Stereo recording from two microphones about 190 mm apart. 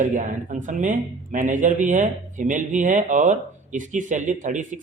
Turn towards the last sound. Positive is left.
turn(degrees=-40)  # may be behind; listen again after turning